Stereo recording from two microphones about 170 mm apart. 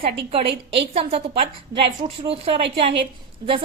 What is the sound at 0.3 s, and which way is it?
A woman's voice, 35° right (ahead or behind).